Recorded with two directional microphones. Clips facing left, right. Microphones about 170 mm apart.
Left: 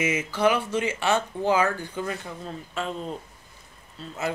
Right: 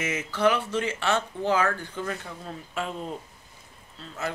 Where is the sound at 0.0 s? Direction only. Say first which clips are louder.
Left 1 dB; 10° left (ahead or behind).